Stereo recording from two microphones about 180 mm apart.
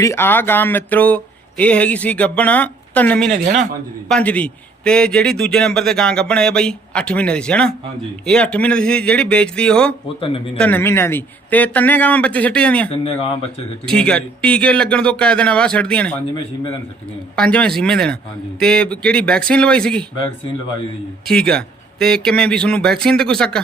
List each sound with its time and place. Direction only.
0.0 s speech: 15° left (ahead or behind)
3.3 s a man's voice: 45° right (ahead or behind)
4.1 s a man's voice: 10° left (ahead or behind)
10.2 s speech: 30° left (ahead or behind)
10.6 s speech: 10° left (ahead or behind)
12.9 s speech: 35° left (ahead or behind)
13.8 s a man's voice: 5° left (ahead or behind)
17.3 s a man's voice: 5° left (ahead or behind)
21.2 s a man's voice: 5° left (ahead or behind)